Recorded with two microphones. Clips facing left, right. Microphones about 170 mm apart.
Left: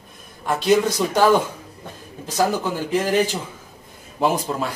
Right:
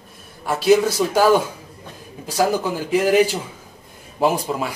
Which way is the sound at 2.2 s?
10° right (ahead or behind).